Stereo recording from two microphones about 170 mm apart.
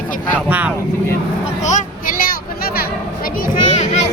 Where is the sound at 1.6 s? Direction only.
45° left (ahead or behind).